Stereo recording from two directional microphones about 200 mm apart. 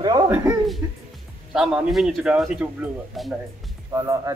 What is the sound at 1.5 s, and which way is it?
A man's voice, centre (ahead or behind).